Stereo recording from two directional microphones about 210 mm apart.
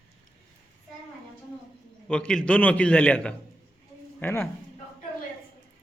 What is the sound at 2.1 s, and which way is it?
A man's voice, 5° left (ahead or behind).